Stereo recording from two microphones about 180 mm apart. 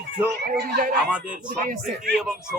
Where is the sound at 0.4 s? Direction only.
60° right (ahead or behind).